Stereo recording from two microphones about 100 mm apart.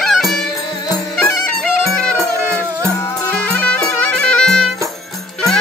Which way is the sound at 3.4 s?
15° left (ahead or behind).